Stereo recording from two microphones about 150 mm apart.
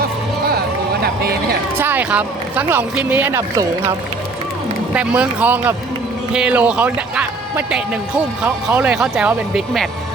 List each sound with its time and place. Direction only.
1.0 s a sound: 90° right
1.8 s speech: 10° right (ahead or behind)
4.9 s speech: 5° right (ahead or behind)